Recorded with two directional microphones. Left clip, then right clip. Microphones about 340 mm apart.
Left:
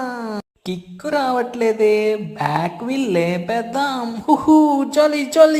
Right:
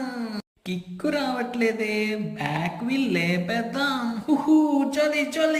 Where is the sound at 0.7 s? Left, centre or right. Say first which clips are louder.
Left 4 dB; centre.